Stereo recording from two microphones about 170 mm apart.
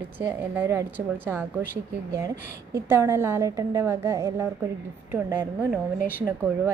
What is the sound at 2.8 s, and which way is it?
A woman's voice, 15° right (ahead or behind).